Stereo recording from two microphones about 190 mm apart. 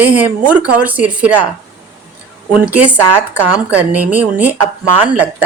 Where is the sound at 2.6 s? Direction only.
5° right (ahead or behind).